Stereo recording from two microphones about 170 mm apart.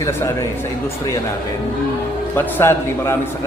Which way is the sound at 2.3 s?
15° left (ahead or behind).